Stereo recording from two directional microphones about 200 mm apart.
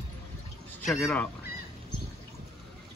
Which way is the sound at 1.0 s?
10° left (ahead or behind).